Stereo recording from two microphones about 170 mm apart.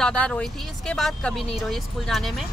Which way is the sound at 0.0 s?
5° left (ahead or behind).